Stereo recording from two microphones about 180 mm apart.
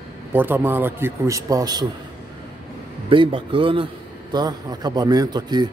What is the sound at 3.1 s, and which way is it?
A man's voice, 30° right (ahead or behind).